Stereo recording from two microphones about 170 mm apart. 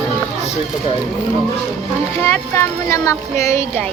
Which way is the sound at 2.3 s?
15° left (ahead or behind).